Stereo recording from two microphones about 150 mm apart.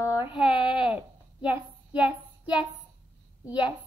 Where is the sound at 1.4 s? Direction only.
10° right (ahead or behind).